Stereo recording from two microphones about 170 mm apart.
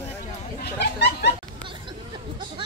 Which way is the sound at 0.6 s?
80° left.